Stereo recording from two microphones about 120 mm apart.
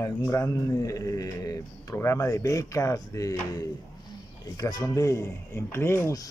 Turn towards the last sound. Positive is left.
turn(degrees=20)  # may be behind; listen again after turning